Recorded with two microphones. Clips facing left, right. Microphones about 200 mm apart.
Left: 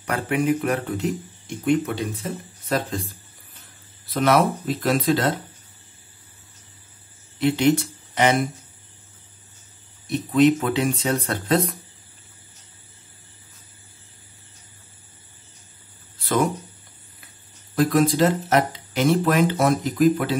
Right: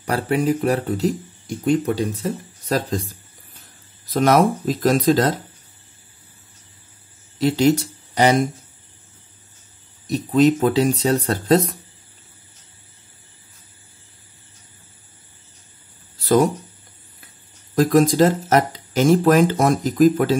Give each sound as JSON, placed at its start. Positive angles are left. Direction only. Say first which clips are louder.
{"t": 0.0, "sound": "speech", "louder": "right 3 dB", "side_deg": -35}
{"t": 7.3, "sound": "speech", "louder": "right 2 dB", "side_deg": -35}
{"t": 10.0, "sound": "speech", "louder": "right 1 dB", "side_deg": -40}
{"t": 16.2, "sound": "a sound", "louder": "right 6 dB", "side_deg": -35}
{"t": 17.7, "sound": "speech", "louder": "right 4 dB", "side_deg": -45}